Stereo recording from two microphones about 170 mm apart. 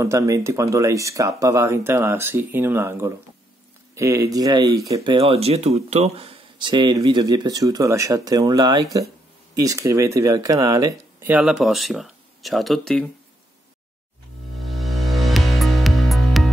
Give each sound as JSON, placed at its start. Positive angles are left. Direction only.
{"t": 0.0, "sound": "speech", "side_deg": -15}
{"t": 11.2, "sound": "speech", "side_deg": -5}
{"t": 14.8, "sound": "music", "side_deg": 0}